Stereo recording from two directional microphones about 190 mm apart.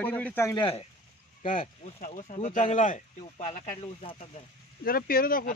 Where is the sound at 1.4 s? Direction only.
45° left (ahead or behind).